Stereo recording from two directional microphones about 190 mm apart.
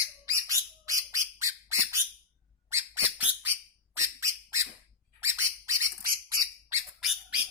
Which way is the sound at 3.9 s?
15° right (ahead or behind).